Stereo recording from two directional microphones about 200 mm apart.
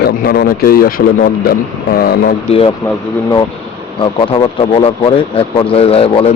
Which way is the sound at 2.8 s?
15° left (ahead or behind).